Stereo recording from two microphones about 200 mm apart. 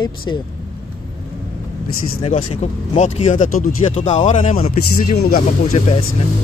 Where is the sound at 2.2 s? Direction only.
35° left (ahead or behind).